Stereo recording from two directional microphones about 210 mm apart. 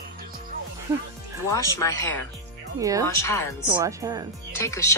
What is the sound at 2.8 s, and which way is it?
Speech, 15° right (ahead or behind).